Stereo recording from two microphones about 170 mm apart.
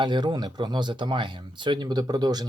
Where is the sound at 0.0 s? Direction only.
25° right (ahead or behind).